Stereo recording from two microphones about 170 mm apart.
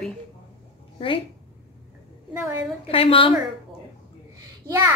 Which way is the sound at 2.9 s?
35° left (ahead or behind).